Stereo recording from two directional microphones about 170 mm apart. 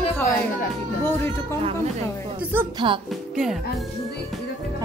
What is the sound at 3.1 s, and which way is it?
Music, centre (ahead or behind).